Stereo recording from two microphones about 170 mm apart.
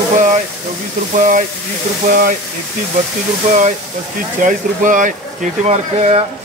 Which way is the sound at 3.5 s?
45° right (ahead or behind).